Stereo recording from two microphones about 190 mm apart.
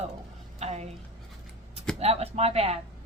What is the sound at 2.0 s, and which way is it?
Speech, 30° right (ahead or behind).